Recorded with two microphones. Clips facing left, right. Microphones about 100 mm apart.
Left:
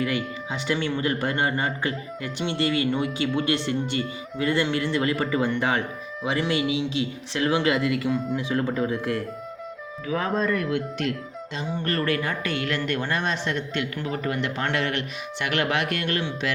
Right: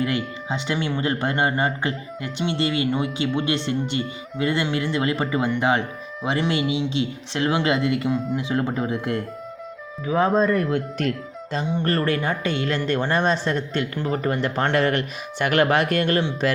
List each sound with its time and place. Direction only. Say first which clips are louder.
0.0 s speech: right 2 dB; 25° right (ahead or behind); by 16.6 s 40° right (ahead or behind)